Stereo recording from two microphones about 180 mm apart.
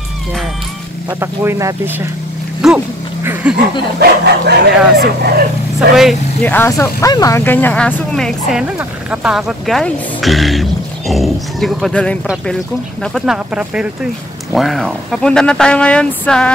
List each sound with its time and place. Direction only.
1.2 s speech: 15° right (ahead or behind)
2.6 s speech: 5° right (ahead or behind)
4.0 s speech: 60° right (ahead or behind)
6.4 s speech: 10° left (ahead or behind)